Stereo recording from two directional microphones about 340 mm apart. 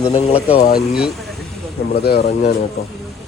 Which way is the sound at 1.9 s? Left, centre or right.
Left.